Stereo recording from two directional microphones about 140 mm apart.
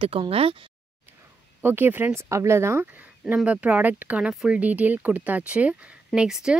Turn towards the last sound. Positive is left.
turn(degrees=-5)  # may be behind; listen again after turning